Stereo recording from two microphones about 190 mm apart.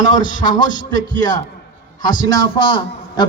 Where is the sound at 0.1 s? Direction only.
25° left (ahead or behind).